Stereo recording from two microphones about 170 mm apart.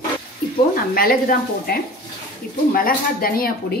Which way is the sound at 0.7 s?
60° left (ahead or behind).